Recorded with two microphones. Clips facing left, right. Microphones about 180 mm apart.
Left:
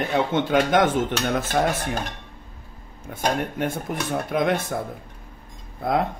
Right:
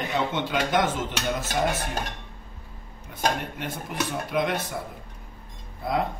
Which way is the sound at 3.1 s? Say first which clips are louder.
Left 3 dB; 50° left (ahead or behind).